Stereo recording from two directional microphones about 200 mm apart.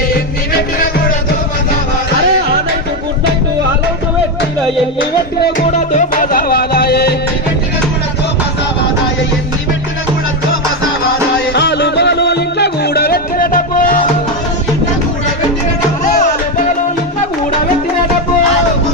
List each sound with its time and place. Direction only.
4.9 s music: 50° left (ahead or behind)
5.7 s music: 35° left (ahead or behind); by 7.2 s 50° left (ahead or behind)
11.5 s music: 55° left (ahead or behind)